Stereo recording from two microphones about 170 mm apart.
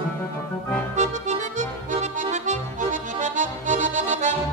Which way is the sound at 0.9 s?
45° right (ahead or behind).